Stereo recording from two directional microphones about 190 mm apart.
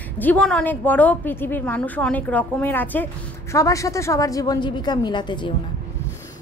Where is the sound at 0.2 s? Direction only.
5° left (ahead or behind); by 5.5 s 25° left (ahead or behind).